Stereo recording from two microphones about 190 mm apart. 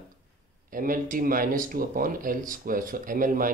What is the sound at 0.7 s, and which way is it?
Speech, 45° right (ahead or behind).